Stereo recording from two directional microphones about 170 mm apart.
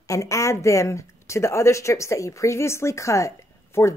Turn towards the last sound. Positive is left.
turn(degrees=15)  # may be behind; listen again after turning